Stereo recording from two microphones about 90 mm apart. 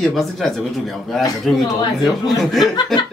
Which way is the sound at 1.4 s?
Centre (ahead or behind).